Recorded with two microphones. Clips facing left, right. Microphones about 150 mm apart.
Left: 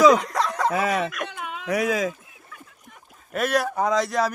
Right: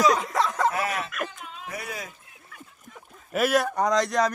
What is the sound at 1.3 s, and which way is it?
Speech, 80° left.